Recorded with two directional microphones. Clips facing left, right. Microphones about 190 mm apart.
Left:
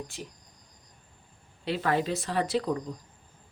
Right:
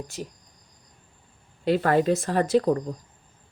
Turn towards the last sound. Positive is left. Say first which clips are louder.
# right 7 dB
turn(degrees=-45)  # may be behind; listen again after turning